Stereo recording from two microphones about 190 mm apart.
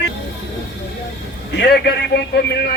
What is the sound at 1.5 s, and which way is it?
A man's voice, 60° left (ahead or behind).